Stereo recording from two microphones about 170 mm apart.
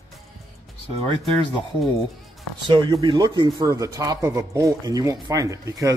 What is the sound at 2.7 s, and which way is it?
A man's voice, 25° right (ahead or behind).